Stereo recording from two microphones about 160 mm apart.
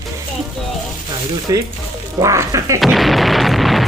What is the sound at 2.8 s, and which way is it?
Artillery fire, centre (ahead or behind).